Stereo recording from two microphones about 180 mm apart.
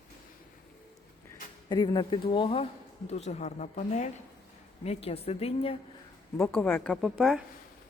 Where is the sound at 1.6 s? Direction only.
25° left (ahead or behind).